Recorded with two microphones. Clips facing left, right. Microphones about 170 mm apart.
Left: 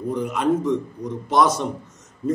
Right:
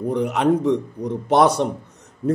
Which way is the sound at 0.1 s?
65° right (ahead or behind).